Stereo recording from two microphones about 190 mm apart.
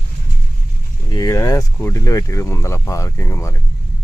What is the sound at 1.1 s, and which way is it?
Speech, 20° left (ahead or behind).